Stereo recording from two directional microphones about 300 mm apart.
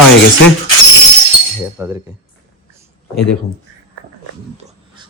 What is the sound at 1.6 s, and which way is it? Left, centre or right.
Speech, centre.